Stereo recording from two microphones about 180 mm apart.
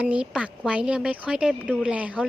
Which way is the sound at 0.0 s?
5° right (ahead or behind).